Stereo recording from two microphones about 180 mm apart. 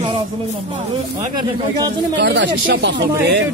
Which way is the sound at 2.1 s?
80° right.